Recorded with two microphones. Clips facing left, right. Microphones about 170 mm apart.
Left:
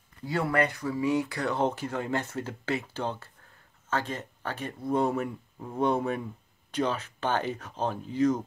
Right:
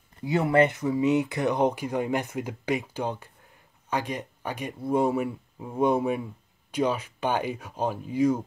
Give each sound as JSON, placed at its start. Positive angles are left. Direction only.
{"t": 0.2, "sound": "speech", "side_deg": -20}